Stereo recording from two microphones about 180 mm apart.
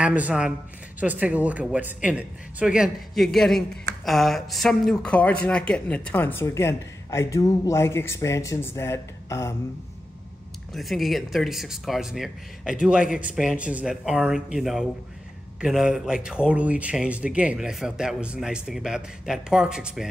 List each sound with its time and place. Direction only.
0.0 s a man's voice: 5° right (ahead or behind); by 9.6 s 15° left (ahead or behind)
10.7 s a man's voice: centre (ahead or behind)